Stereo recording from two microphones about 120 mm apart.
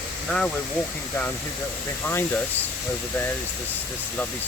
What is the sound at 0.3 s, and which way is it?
Speech, 5° left (ahead or behind).